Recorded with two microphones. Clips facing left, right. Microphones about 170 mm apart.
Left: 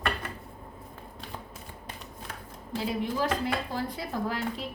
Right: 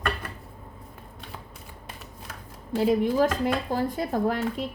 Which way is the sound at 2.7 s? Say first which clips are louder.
Right 8 dB; 45° right (ahead or behind).